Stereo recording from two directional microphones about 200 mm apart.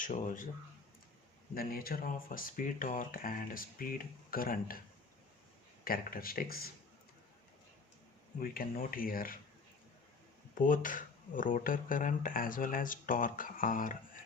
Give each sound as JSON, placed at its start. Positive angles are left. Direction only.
{"t": 0.0, "sound": "speech", "side_deg": 40}
{"t": 1.5, "sound": "speech", "side_deg": 50}
{"t": 5.8, "sound": "speech", "side_deg": 45}
{"t": 8.4, "sound": "speech", "side_deg": 45}
{"t": 10.5, "sound": "speech", "side_deg": 40}